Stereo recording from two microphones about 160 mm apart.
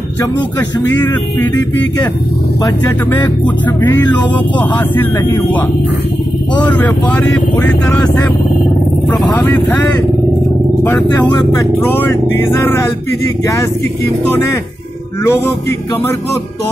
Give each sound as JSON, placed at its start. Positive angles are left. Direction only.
{"t": 3.8, "sound": "speech", "side_deg": 25}
{"t": 4.3, "sound": "speech", "side_deg": 10}
{"t": 6.7, "sound": "speech", "side_deg": 10}
{"t": 10.8, "sound": "speech", "side_deg": 10}
{"t": 11.1, "sound": "speech", "side_deg": 25}